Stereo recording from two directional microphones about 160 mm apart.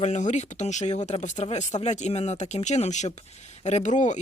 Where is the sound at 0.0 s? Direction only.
50° left (ahead or behind).